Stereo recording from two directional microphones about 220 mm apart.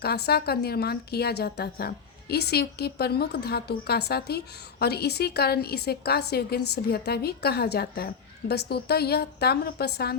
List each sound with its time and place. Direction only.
0.3 s a woman's voice: 45° left (ahead or behind)